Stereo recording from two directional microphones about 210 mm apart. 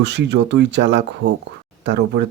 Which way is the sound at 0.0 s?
55° right (ahead or behind).